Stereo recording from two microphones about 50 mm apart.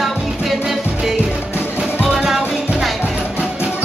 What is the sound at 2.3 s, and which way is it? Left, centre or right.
Music, centre.